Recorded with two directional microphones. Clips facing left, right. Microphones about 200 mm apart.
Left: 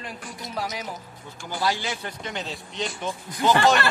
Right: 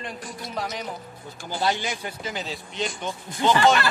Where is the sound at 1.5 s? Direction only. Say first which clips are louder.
Right 1 dB; 20° right (ahead or behind).